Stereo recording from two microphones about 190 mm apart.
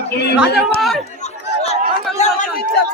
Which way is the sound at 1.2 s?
35° left (ahead or behind).